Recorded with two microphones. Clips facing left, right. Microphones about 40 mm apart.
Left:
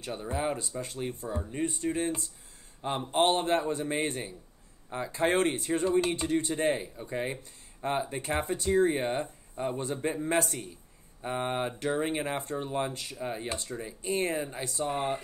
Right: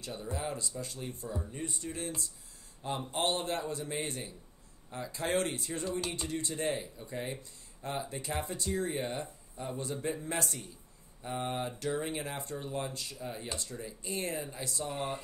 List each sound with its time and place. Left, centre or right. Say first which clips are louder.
0.0 s speech: left 6 dB; left